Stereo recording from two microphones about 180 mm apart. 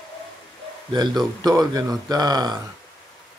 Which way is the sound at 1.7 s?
20° right (ahead or behind).